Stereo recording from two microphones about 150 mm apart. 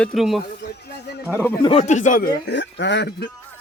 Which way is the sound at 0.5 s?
90° left.